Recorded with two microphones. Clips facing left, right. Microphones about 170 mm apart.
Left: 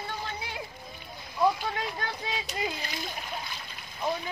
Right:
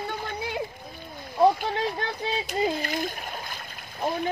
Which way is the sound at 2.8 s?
50° right (ahead or behind).